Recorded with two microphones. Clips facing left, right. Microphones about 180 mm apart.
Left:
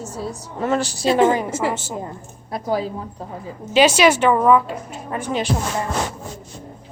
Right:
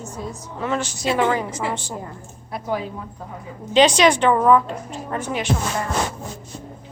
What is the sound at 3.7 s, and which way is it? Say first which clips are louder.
A woman's voice: left 1 dB; 5° left (ahead or behind).